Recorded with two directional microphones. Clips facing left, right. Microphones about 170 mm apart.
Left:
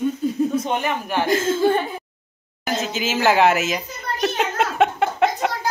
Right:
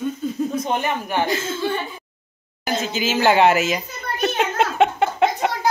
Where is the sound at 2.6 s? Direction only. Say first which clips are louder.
Right 1 dB; centre (ahead or behind).